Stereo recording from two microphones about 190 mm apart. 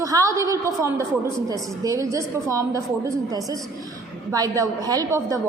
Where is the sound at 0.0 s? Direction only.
15° right (ahead or behind).